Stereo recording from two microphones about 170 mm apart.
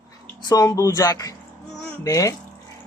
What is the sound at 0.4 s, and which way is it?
A man's voice, 20° left (ahead or behind).